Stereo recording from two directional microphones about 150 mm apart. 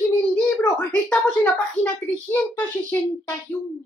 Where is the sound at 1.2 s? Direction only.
15° left (ahead or behind).